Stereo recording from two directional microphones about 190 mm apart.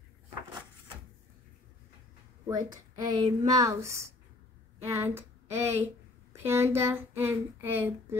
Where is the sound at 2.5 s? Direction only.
20° right (ahead or behind).